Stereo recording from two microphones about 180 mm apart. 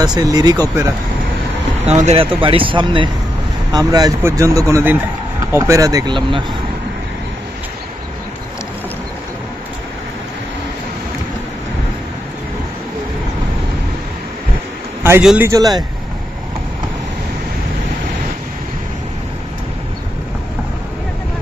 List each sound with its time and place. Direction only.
0.0 s speech: 20° right (ahead or behind)
1.9 s speech: 35° right (ahead or behind)
15.2 s speech: 10° right (ahead or behind)
15.5 s speech: 20° right (ahead or behind)